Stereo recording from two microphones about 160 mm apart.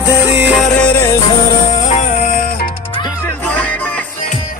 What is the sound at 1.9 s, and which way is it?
Music, 45° left (ahead or behind).